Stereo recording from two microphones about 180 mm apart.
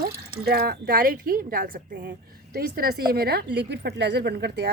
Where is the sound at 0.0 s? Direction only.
55° right (ahead or behind).